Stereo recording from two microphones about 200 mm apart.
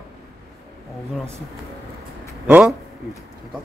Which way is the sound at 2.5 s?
5° right (ahead or behind).